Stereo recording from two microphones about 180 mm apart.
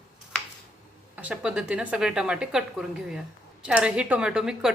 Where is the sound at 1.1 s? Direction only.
5° right (ahead or behind).